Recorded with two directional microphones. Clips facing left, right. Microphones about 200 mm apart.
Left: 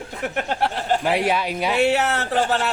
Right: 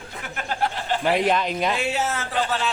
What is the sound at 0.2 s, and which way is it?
Speech, 65° left (ahead or behind).